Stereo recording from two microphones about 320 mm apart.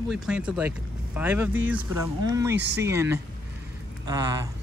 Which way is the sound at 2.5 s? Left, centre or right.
Right.